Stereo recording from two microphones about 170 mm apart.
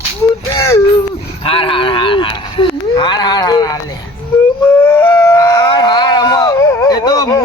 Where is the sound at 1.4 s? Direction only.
30° left (ahead or behind).